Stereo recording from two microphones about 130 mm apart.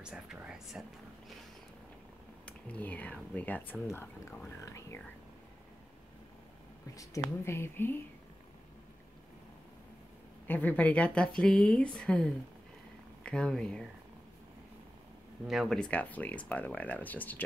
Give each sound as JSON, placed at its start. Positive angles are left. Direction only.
{"t": 0.0, "sound": "speech", "side_deg": -5}
{"t": 2.4, "sound": "speech", "side_deg": 10}
{"t": 7.4, "sound": "speech", "side_deg": 20}
{"t": 10.4, "sound": "speech", "side_deg": 15}
{"t": 15.4, "sound": "speech", "side_deg": 0}